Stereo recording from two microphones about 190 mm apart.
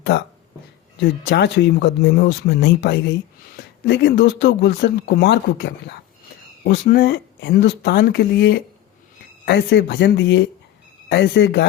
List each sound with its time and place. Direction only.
0.9 s speech: 65° left (ahead or behind)